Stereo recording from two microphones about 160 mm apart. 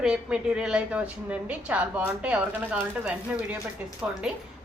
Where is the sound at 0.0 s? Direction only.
5° right (ahead or behind).